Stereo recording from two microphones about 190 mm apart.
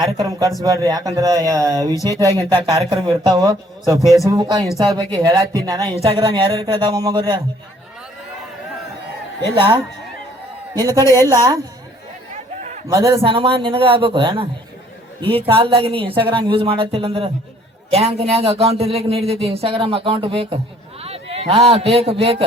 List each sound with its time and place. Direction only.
0.0 s speech: 20° right (ahead or behind)
4.6 s speech: centre (ahead or behind)
4.9 s speech: 20° right (ahead or behind)
9.6 s speech: 25° right (ahead or behind)
10.8 s a woman's voice: 15° left (ahead or behind)
11.1 s speech: 20° right (ahead or behind)
12.3 s a sound: 40° right (ahead or behind)
12.9 s a man's voice: 15° right (ahead or behind)